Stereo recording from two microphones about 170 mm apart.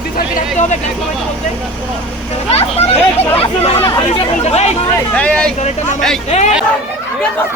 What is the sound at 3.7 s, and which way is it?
Chatter, 20° left (ahead or behind).